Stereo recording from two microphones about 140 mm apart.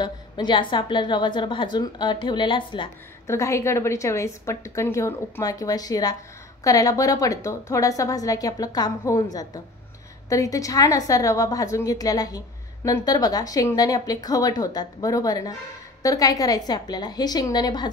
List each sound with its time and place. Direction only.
0.0 s a woman's voice: 35° left (ahead or behind)
3.3 s a woman's voice: 20° left (ahead or behind)